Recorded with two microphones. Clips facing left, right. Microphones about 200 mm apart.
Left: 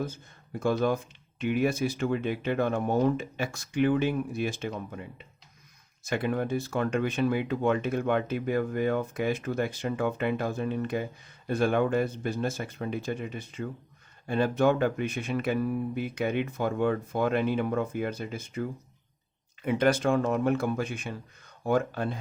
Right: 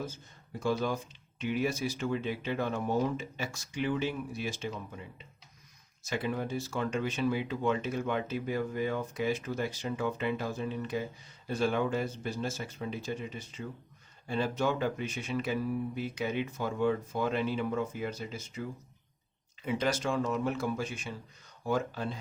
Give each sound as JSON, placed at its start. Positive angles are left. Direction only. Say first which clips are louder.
{"t": 0.6, "sound": "speech", "louder": "left 5 dB", "side_deg": 55}